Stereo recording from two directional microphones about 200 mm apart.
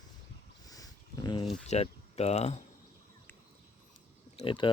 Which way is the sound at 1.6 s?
30° left (ahead or behind).